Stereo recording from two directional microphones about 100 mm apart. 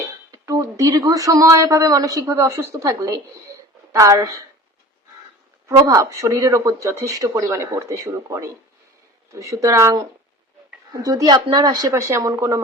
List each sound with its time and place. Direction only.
0.3 s speech: 35° right (ahead or behind)
5.6 s speech: 30° right (ahead or behind)